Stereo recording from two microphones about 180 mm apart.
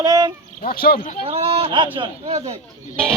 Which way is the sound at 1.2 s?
30° right (ahead or behind).